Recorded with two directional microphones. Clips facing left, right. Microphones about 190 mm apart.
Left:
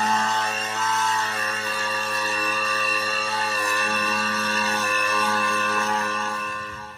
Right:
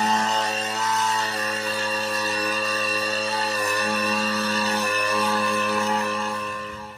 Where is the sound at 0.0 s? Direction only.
20° right (ahead or behind).